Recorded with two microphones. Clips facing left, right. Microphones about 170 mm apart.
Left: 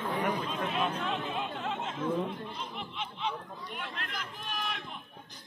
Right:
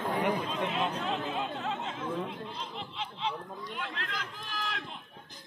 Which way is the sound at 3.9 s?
90° right.